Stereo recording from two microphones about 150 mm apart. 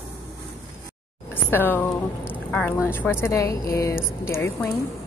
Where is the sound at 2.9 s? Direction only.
15° left (ahead or behind).